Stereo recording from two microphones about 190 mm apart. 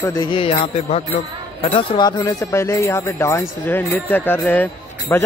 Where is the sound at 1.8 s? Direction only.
20° left (ahead or behind).